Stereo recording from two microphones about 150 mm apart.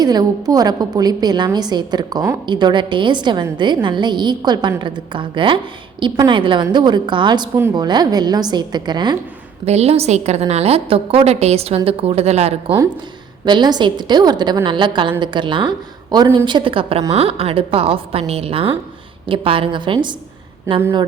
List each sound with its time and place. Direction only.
0.0 s a woman's voice: 25° right (ahead or behind)
9.6 s a woman's voice: 45° right (ahead or behind)
13.4 s a woman's voice: 30° right (ahead or behind)
20.7 s speech: 15° right (ahead or behind)